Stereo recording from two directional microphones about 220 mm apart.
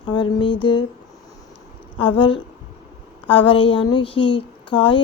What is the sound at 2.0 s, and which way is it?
Speech, 25° left (ahead or behind).